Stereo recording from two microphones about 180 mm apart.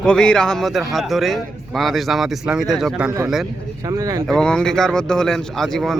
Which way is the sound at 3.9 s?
20° right (ahead or behind).